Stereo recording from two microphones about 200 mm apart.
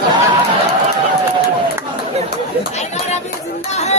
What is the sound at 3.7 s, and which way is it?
Chatter, 35° left (ahead or behind).